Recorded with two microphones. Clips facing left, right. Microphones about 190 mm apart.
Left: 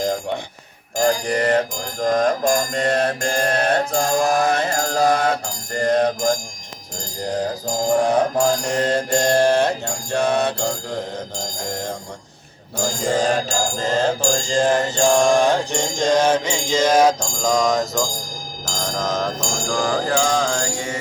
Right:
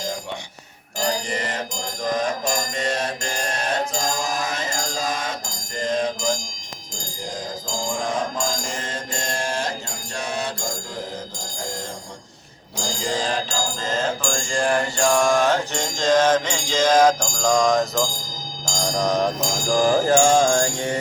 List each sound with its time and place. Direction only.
0.9 s music: 55° left (ahead or behind)
12.7 s music: 55° left (ahead or behind); by 14.3 s 40° left (ahead or behind)
14.5 s mantra: 25° left (ahead or behind)
17.4 s speech: 5° left (ahead or behind)
18.9 s speech: 15° right (ahead or behind)
19.7 s mantra: 20° right (ahead or behind)